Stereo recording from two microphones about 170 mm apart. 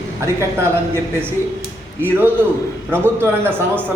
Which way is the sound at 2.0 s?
10° right (ahead or behind).